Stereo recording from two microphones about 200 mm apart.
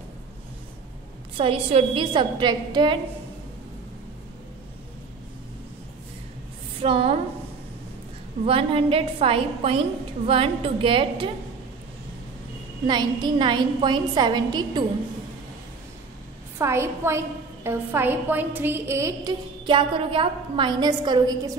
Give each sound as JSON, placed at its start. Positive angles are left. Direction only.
{"t": 1.4, "sound": "a woman's voice", "side_deg": -30}
{"t": 6.8, "sound": "a woman's voice", "side_deg": -30}
{"t": 8.5, "sound": "a woman's voice", "side_deg": -30}
{"t": 12.8, "sound": "a woman's voice", "side_deg": -20}
{"t": 16.5, "sound": "a woman's voice", "side_deg": -15}